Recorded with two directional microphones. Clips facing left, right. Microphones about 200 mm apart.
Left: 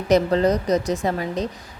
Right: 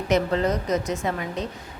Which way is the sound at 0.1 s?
35° left (ahead or behind).